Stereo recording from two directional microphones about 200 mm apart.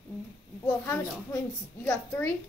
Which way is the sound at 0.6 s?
10° left (ahead or behind).